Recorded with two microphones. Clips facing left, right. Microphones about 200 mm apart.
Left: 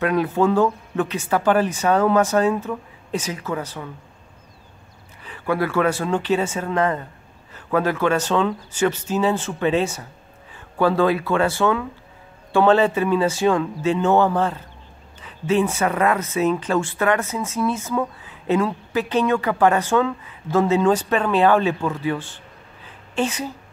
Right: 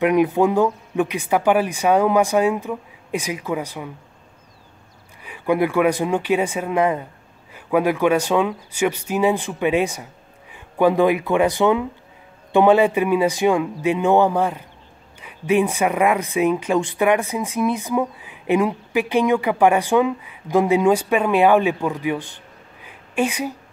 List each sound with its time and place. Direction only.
0.0 s speech: 15° right (ahead or behind)
5.2 s speech: 15° right (ahead or behind)
22.8 s a sound: 10° right (ahead or behind)